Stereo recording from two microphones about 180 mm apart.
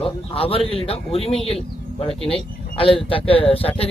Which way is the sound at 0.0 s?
30° left (ahead or behind).